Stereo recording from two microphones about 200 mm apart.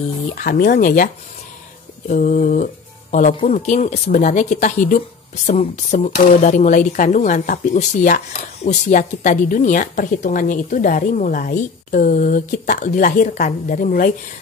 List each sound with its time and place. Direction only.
0.3 s speech: 45° left (ahead or behind)